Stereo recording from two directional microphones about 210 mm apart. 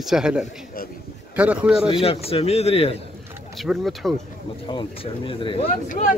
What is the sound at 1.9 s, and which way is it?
Speech, 25° left (ahead or behind).